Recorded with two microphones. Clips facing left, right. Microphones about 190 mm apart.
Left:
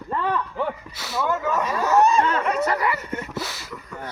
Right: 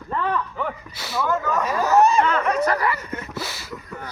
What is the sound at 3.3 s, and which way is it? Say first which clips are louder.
Speech: even; centre (ahead or behind).